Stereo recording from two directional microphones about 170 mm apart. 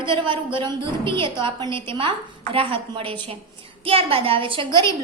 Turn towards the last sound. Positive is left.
turn(degrees=-30)  # may be behind; listen again after turning